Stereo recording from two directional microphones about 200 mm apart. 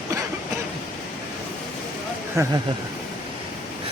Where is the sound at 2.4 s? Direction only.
15° right (ahead or behind).